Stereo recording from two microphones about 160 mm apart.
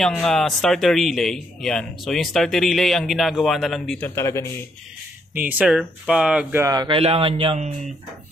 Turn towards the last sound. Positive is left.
turn(degrees=-40)  # may be behind; listen again after turning